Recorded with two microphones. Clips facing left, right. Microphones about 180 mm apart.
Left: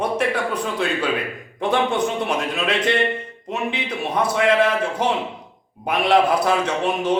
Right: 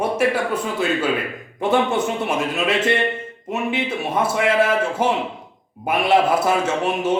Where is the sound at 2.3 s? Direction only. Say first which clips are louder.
Right 2 dB; 5° right (ahead or behind).